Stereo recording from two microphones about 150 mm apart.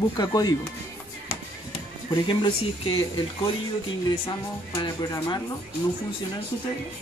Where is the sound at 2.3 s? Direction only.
35° left (ahead or behind).